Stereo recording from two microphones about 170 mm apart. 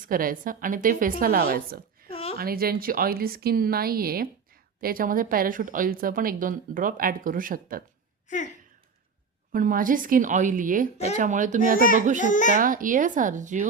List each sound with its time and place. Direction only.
0.0 s a woman's voice: 55° right (ahead or behind)
2.0 s a sound: 35° left (ahead or behind)
2.4 s speech: 60° right (ahead or behind)
9.5 s a woman's voice: 55° right (ahead or behind)
10.9 s speech: 40° left (ahead or behind)
11.2 s a woman's voice: 50° right (ahead or behind)
12.2 s a child's voice: 50° left (ahead or behind)
12.5 s a woman's voice: 55° right (ahead or behind)